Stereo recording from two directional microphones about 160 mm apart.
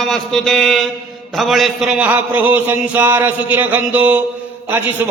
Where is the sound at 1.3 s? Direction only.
Centre (ahead or behind).